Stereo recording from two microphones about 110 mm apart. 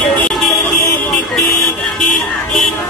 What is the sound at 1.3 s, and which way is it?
Vehicle, centre (ahead or behind).